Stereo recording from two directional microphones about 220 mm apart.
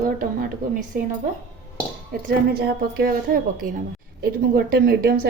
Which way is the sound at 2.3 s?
45° right (ahead or behind).